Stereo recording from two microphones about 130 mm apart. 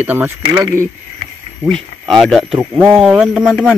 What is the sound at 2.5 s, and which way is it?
Speech, 15° right (ahead or behind).